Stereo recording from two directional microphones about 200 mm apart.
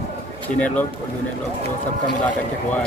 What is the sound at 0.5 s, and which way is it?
Speech, 5° left (ahead or behind).